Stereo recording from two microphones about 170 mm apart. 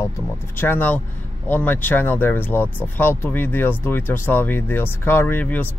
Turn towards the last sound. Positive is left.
turn(degrees=10)  # may be behind; listen again after turning